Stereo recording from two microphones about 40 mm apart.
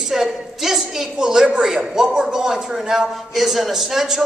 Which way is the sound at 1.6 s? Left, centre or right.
Centre.